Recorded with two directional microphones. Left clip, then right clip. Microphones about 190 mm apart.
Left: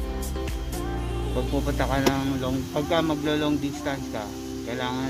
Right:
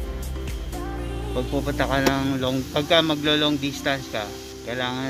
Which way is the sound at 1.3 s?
Centre (ahead or behind).